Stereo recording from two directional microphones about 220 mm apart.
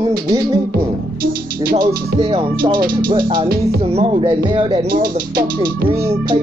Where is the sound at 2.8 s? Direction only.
40° right (ahead or behind).